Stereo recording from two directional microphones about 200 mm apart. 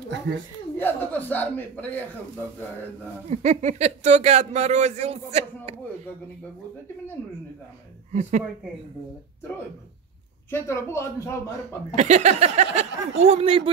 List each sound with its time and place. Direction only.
0.3 s speech: 60° right (ahead or behind)
0.7 s speech: 10° left (ahead or behind)
3.3 s speech: 35° right (ahead or behind)
8.1 s speech: 40° right (ahead or behind)
10.5 s speech: 15° left (ahead or behind)
11.9 s speech: 35° right (ahead or behind)